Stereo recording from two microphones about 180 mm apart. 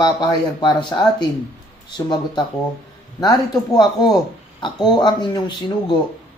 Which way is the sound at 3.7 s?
20° left (ahead or behind).